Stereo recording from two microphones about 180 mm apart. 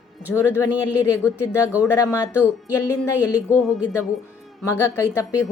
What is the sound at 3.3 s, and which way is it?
Speech, centre (ahead or behind).